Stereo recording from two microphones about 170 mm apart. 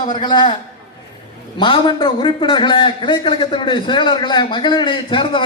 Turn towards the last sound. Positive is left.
turn(degrees=30)  # may be behind; listen again after turning